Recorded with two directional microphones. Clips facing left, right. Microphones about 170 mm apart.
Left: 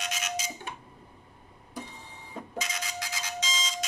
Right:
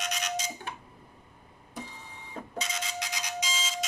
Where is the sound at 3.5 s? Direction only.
5° right (ahead or behind).